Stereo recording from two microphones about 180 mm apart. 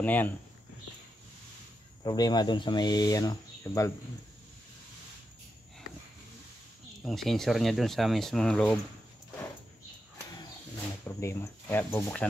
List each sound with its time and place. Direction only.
0.0 s speech: 10° left (ahead or behind)
2.0 s speech: 20° left (ahead or behind)
7.1 s speech: centre (ahead or behind)
11.1 s speech: 15° left (ahead or behind)